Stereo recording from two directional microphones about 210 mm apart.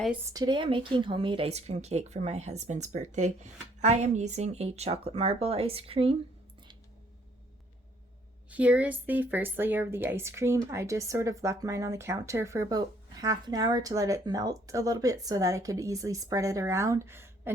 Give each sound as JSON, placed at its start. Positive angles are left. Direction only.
{"t": 0.3, "sound": "speech", "side_deg": -20}
{"t": 8.4, "sound": "a woman's voice", "side_deg": -5}